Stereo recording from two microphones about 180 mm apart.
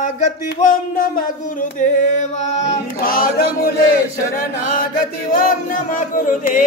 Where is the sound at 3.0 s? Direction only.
55° left (ahead or behind).